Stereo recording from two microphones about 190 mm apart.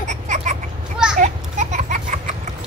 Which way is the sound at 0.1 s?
40° right (ahead or behind).